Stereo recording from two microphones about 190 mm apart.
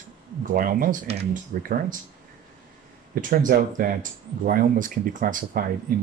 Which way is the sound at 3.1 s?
45° right (ahead or behind).